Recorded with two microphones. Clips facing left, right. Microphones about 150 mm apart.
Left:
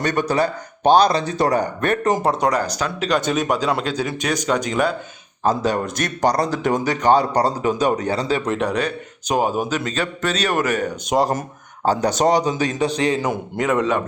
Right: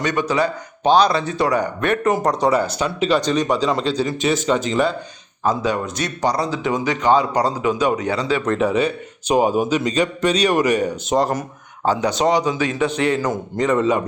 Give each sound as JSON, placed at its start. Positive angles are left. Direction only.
{"t": 0.0, "sound": "speech", "side_deg": 55}
{"t": 2.2, "sound": "speech", "side_deg": 5}
{"t": 5.5, "sound": "speech", "side_deg": 40}
{"t": 8.4, "sound": "a man's voice", "side_deg": 0}
{"t": 11.9, "sound": "speech", "side_deg": 40}
{"t": 13.2, "sound": "speech", "side_deg": 5}